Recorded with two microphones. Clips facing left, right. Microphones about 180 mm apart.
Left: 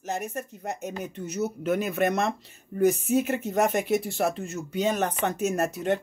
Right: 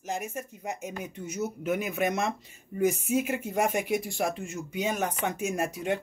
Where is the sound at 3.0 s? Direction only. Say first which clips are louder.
Left 3 dB; centre (ahead or behind).